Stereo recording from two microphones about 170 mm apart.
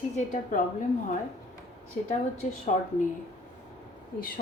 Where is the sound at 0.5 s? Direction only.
50° left (ahead or behind).